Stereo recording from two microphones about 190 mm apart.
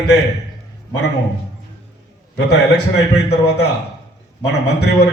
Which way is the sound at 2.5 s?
65° left (ahead or behind).